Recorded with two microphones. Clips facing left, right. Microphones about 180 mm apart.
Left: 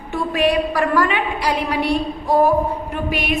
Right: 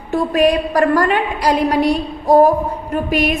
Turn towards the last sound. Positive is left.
turn(degrees=-45)  # may be behind; listen again after turning